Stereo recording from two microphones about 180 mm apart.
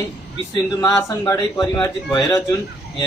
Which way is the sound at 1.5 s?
25° left (ahead or behind).